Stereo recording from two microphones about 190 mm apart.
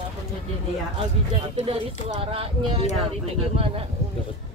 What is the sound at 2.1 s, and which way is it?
Speech, 30° right (ahead or behind).